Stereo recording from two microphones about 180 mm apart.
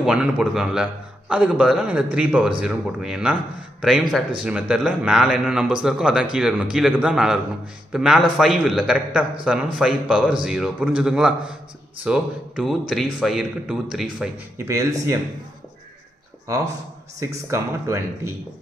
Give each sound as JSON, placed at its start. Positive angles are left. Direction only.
{"t": 0.0, "sound": "a man's voice", "side_deg": -5}
{"t": 14.6, "sound": "a man's voice", "side_deg": -15}
{"t": 16.4, "sound": "a man's voice", "side_deg": -20}